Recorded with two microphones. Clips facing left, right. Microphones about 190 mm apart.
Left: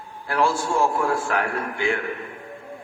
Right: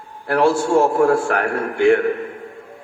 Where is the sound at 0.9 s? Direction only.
45° right (ahead or behind).